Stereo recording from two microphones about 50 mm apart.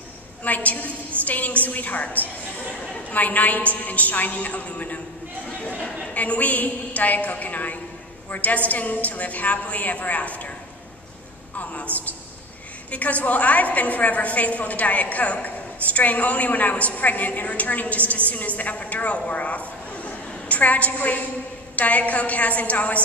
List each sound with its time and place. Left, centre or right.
0.4 s a sound: left
1.2 s a woman's voice: left
6.1 s a woman's voice: left
11.5 s a woman's voice: left